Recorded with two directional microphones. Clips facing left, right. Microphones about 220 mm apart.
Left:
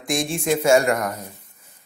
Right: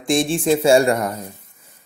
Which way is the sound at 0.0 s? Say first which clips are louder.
Right 5 dB; 30° right (ahead or behind).